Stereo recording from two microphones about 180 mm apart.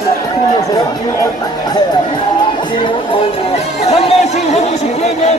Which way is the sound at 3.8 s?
35° left (ahead or behind).